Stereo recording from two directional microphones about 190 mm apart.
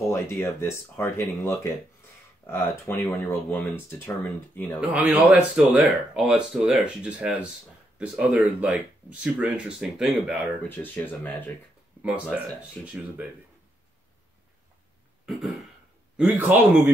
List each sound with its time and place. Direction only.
0.0 s speech: 10° left (ahead or behind)
4.7 s speech: 5° right (ahead or behind)
10.7 s speech: 10° left (ahead or behind)
12.0 s a man's voice: 5° right (ahead or behind)
16.2 s a man's voice: 5° right (ahead or behind)